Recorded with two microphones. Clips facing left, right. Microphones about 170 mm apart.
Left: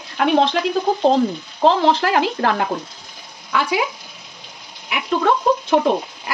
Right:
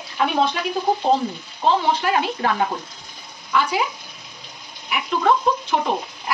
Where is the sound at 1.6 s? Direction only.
90° left.